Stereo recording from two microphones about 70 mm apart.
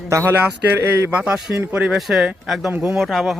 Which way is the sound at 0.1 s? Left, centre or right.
Right.